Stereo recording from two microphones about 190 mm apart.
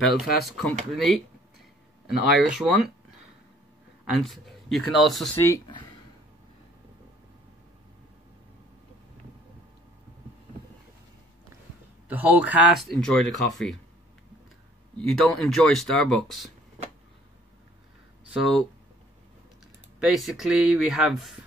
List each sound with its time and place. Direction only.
0.2 s speech: centre (ahead or behind)
4.0 s speech: centre (ahead or behind)
5.4 s speech: 20° left (ahead or behind)
12.1 s speech: 5° right (ahead or behind)
15.0 s speech: centre (ahead or behind)
18.3 s speech: centre (ahead or behind)
20.2 s speech: centre (ahead or behind)